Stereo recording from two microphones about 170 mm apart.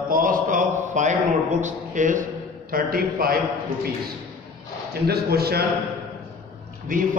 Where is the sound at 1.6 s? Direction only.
50° right (ahead or behind).